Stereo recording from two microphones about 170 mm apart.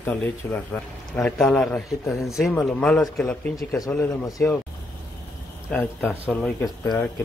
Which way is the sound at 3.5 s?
20° left (ahead or behind).